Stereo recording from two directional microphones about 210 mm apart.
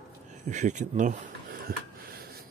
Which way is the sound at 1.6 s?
45° right (ahead or behind).